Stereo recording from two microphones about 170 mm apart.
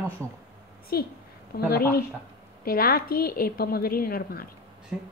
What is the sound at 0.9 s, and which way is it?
A woman's voice, 60° left (ahead or behind).